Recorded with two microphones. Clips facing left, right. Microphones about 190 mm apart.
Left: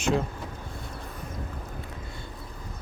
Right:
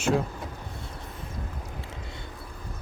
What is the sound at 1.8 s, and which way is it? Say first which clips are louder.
Boat: even; 25° right (ahead or behind).